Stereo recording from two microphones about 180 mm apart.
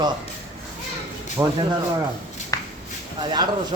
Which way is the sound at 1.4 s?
15° right (ahead or behind).